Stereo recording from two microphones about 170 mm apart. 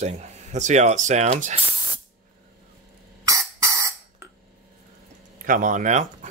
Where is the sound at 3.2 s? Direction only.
20° right (ahead or behind).